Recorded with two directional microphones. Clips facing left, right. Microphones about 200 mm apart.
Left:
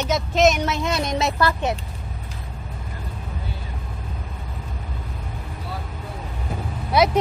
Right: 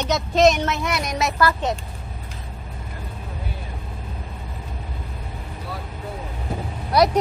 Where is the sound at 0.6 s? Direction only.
25° left (ahead or behind).